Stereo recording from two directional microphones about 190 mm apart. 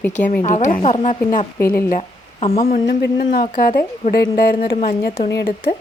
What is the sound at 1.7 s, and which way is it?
Speech, 50° left (ahead or behind).